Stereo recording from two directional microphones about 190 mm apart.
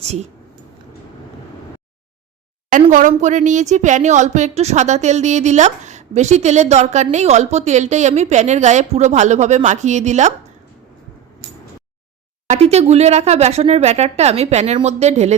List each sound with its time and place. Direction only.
0.0 s speech: 35° right (ahead or behind)
2.9 s a woman's voice: 40° right (ahead or behind)
12.5 s a woman's voice: 35° right (ahead or behind)